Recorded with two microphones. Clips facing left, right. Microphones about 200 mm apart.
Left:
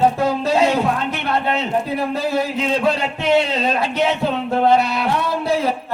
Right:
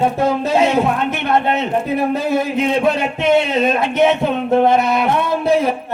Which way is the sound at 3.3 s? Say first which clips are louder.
Right 1 dB; 20° right (ahead or behind).